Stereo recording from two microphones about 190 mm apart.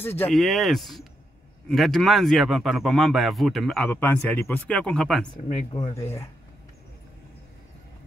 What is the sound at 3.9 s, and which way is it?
A man's voice, 10° left (ahead or behind).